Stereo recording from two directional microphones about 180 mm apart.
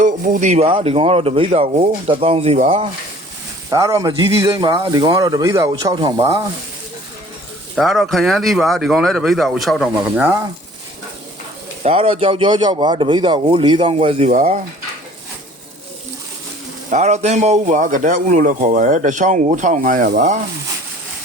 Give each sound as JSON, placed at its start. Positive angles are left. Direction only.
{"t": 0.0, "sound": "speech", "side_deg": -45}
{"t": 3.7, "sound": "a man's voice", "side_deg": -20}
{"t": 7.8, "sound": "speech", "side_deg": 0}
{"t": 11.8, "sound": "a man's voice", "side_deg": -35}
{"t": 16.9, "sound": "speech", "side_deg": -40}